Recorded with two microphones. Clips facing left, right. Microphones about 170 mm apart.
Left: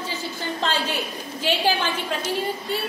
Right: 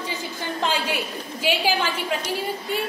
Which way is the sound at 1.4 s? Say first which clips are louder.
Even; 10° right (ahead or behind).